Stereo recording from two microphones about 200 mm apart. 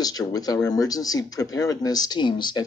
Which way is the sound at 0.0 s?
20° left (ahead or behind).